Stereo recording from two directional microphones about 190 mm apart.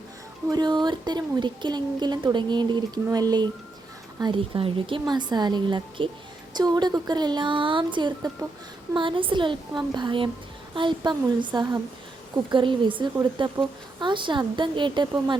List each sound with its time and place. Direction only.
0.5 s a woman's voice: 20° right (ahead or behind)